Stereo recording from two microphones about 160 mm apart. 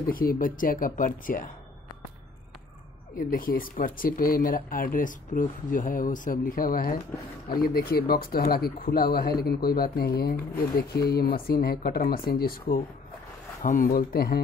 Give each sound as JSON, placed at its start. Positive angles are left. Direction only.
{"t": 0.1, "sound": "speech", "side_deg": 65}
{"t": 3.2, "sound": "speech", "side_deg": 65}
{"t": 13.6, "sound": "speech", "side_deg": 55}